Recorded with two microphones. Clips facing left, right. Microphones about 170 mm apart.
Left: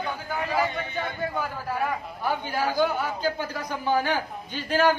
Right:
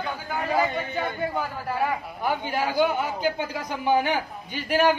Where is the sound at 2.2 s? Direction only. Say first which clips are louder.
Right 1 dB; 20° right (ahead or behind).